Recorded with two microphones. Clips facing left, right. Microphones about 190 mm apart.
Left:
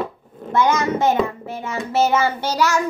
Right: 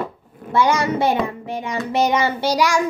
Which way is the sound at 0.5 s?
10° right (ahead or behind).